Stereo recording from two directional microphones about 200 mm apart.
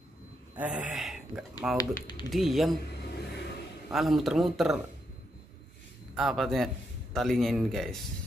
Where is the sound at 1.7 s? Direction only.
20° left (ahead or behind).